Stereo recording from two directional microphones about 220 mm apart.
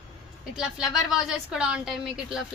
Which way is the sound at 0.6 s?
Centre (ahead or behind).